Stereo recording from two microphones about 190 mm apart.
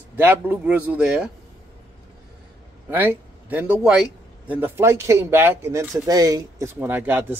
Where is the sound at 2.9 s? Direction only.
10° right (ahead or behind).